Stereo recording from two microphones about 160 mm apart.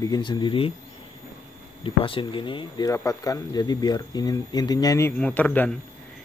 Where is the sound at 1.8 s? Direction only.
35° left (ahead or behind).